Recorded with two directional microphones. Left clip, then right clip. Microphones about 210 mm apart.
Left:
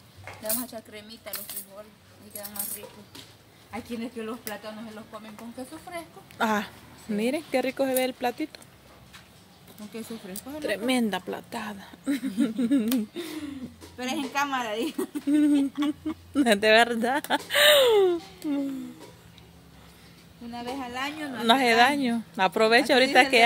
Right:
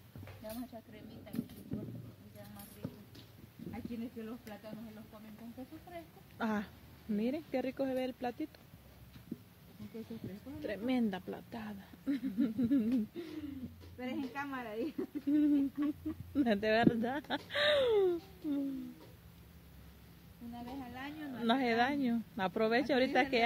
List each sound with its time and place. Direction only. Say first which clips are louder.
0.5 s speech: left 12 dB; 15° left (ahead or behind)
3.7 s speech: left 11 dB; 5° left (ahead or behind)
6.3 s speech: left 12 dB; 5° left (ahead or behind)
10.7 s speech: left 10 dB; 5° left (ahead or behind)
13.9 s a woman's voice: left 13 dB; 55° left (ahead or behind)
15.3 s speech: left 8 dB; 5° left (ahead or behind)
20.9 s speech: left 13 dB; 10° left (ahead or behind)